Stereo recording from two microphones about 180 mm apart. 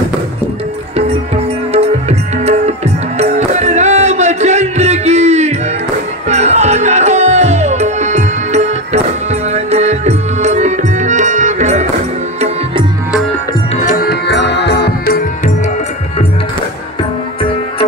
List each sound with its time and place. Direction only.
1.7 s music: 35° right (ahead or behind)
13.8 s music: 55° left (ahead or behind)